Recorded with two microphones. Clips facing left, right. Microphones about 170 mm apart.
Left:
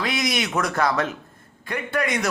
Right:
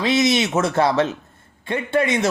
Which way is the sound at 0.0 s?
25° right (ahead or behind).